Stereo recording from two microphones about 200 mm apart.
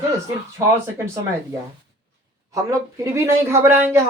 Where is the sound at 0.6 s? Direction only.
15° right (ahead or behind).